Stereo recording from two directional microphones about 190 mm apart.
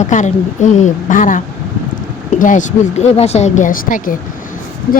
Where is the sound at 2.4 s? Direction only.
40° left (ahead or behind).